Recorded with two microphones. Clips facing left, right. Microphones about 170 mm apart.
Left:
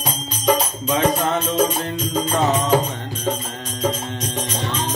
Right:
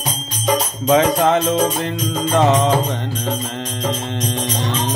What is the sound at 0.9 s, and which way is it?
Music, 80° right.